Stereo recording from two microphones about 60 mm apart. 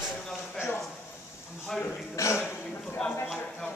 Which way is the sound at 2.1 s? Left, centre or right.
Left.